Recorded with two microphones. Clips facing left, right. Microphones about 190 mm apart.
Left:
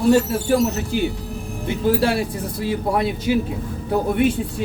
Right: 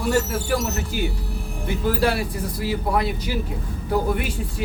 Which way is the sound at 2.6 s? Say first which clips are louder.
Left 2 dB; 25° left (ahead or behind).